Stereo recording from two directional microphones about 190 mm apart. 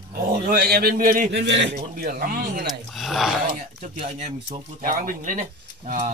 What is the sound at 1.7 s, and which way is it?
Speech, 50° right (ahead or behind).